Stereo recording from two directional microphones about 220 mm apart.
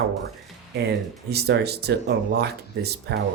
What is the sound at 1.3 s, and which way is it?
Speech, 45° right (ahead or behind).